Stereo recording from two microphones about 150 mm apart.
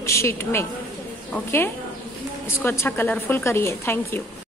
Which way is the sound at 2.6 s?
15° left (ahead or behind).